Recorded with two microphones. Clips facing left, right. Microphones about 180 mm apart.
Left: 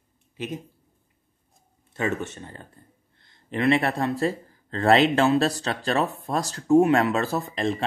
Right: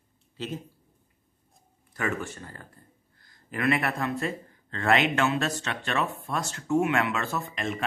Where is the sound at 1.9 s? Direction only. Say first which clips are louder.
Left 3 dB; 25° left (ahead or behind).